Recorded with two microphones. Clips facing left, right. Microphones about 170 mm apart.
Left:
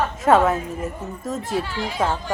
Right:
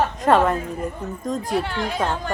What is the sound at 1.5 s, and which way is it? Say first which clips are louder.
Speech: right 1 dB; 60° right (ahead or behind).